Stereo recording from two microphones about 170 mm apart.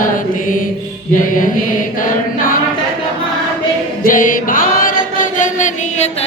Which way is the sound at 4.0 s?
55° left (ahead or behind).